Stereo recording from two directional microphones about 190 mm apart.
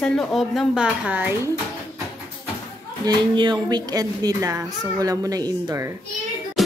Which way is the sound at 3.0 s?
25° right (ahead or behind).